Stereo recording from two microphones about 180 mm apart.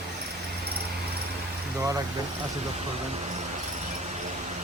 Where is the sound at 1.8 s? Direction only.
20° right (ahead or behind).